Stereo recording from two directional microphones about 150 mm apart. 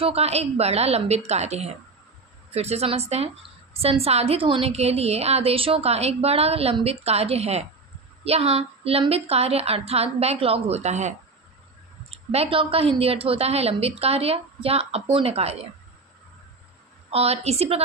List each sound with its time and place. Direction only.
0.0 s a woman's voice: 45° right (ahead or behind)
17.1 s a woman's voice: 45° right (ahead or behind)